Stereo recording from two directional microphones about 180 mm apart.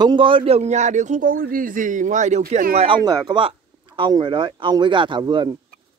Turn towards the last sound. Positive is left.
turn(degrees=-25)  # may be behind; listen again after turning